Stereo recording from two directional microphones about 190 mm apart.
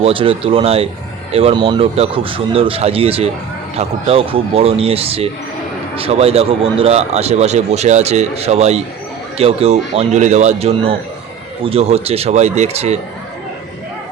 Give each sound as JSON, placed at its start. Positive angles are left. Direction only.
{"t": 0.0, "sound": "speech", "side_deg": -30}